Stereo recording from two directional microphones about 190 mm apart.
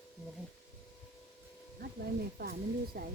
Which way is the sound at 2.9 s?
55° right (ahead or behind).